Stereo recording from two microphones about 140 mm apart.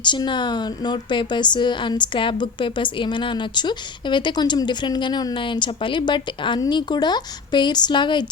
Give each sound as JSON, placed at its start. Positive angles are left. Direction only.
{"t": 0.0, "sound": "a woman's voice", "side_deg": 35}